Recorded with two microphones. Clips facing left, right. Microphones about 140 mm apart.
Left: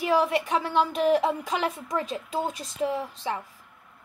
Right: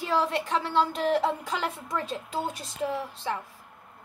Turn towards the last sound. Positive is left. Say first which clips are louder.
# left 2 dB
turn(degrees=15)  # may be behind; listen again after turning